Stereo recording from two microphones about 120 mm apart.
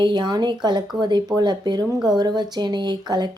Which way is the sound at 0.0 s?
35° right (ahead or behind).